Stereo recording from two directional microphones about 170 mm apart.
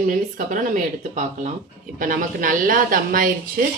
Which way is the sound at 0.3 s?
50° right (ahead or behind).